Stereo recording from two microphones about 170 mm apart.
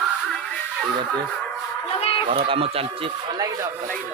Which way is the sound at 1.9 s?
35° left (ahead or behind).